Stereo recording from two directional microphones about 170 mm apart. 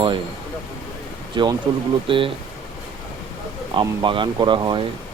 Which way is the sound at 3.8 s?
30° right (ahead or behind).